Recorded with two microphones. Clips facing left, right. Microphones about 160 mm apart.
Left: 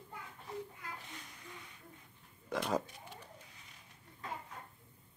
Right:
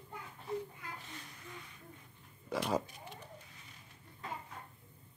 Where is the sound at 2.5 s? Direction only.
5° right (ahead or behind).